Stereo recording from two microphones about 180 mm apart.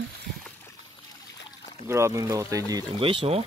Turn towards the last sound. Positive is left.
turn(degrees=-30)  # may be behind; listen again after turning